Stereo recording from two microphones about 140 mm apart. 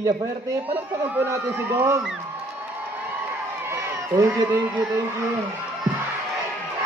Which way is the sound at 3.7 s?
25° right (ahead or behind).